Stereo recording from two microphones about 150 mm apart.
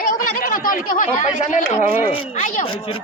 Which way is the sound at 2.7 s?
35° left (ahead or behind).